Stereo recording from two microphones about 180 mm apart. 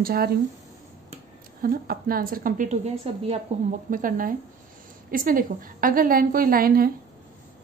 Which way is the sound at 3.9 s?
50° right (ahead or behind).